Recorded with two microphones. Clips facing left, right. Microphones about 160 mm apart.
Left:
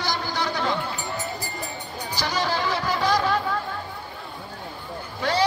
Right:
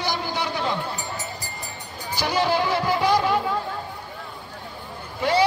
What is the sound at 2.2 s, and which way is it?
Speech, 10° right (ahead or behind).